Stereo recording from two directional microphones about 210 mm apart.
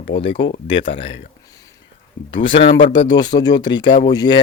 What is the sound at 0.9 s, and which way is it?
Speech, 60° left (ahead or behind).